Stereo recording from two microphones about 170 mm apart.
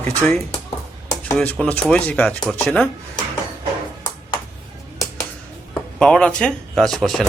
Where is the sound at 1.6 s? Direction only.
5° left (ahead or behind).